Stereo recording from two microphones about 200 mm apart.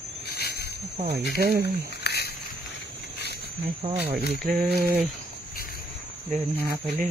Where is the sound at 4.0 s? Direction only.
50° right (ahead or behind).